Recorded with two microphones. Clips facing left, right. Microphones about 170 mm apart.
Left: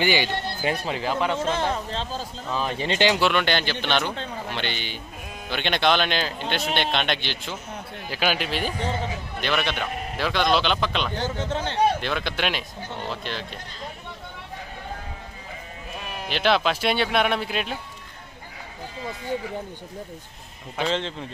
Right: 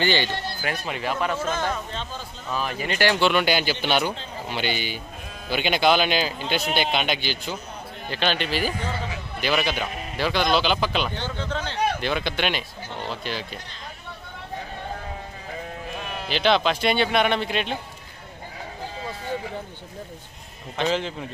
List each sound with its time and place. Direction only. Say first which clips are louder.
0.0 s speech: even; 10° left (ahead or behind)
0.6 s speech: left 3 dB; 30° left (ahead or behind)
3.2 s speech: right 1 dB; centre (ahead or behind)
11.3 s speech: left 2 dB; 20° left (ahead or behind)
12.0 s speech: right 1 dB; centre (ahead or behind)
16.3 s speech: right 1 dB; centre (ahead or behind)
20.8 s speech: right 2 dB; 10° left (ahead or behind)